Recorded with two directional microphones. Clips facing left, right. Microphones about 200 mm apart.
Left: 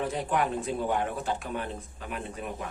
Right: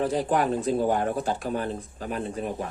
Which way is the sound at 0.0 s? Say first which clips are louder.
Right 5 dB; 35° right (ahead or behind).